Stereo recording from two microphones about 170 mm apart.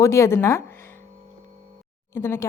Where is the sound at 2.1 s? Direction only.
15° left (ahead or behind).